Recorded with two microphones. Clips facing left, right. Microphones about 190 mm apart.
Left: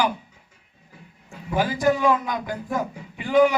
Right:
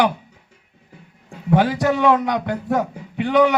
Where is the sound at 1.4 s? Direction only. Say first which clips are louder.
Right 4 dB; 70° right (ahead or behind).